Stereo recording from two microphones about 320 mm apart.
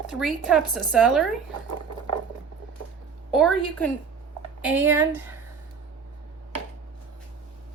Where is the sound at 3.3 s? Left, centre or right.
Centre.